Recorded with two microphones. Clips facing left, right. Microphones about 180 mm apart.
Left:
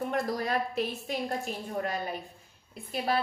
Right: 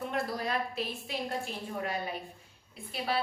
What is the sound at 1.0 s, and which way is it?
Speech, 45° left (ahead or behind).